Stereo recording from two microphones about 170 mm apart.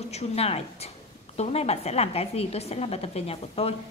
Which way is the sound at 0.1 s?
35° left (ahead or behind).